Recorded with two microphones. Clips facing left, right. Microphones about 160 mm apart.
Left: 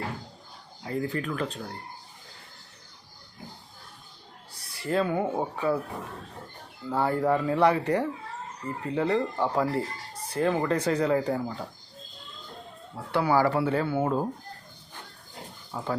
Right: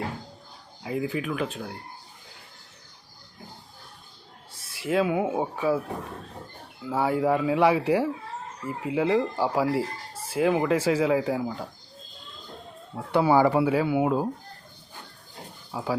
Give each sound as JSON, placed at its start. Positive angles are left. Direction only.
{"t": 0.9, "sound": "speech", "side_deg": -5}
{"t": 4.5, "sound": "speech", "side_deg": 0}
{"t": 6.9, "sound": "speech", "side_deg": -5}
{"t": 13.1, "sound": "speech", "side_deg": -20}
{"t": 15.7, "sound": "speech", "side_deg": -5}